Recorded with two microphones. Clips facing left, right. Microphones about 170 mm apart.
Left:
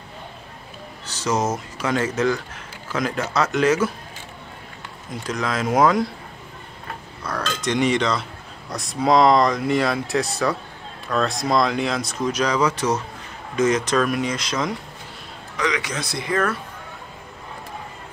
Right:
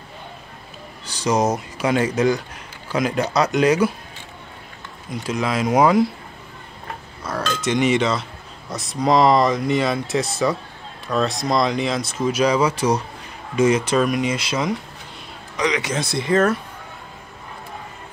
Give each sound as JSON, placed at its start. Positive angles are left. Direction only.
{"t": 1.0, "sound": "a man's voice", "side_deg": -15}
{"t": 5.1, "sound": "a man's voice", "side_deg": -10}
{"t": 7.2, "sound": "a sound", "side_deg": -5}
{"t": 8.6, "sound": "a man's voice", "side_deg": 0}
{"t": 15.5, "sound": "speech", "side_deg": -20}